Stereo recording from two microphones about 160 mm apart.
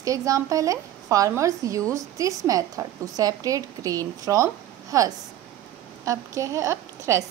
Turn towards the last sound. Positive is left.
turn(degrees=-20)  # may be behind; listen again after turning